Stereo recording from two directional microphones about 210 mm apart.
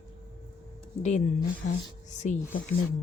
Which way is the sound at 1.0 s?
35° left (ahead or behind).